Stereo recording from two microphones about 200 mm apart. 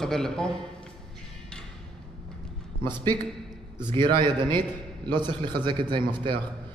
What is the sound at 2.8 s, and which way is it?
A man's voice, 20° right (ahead or behind).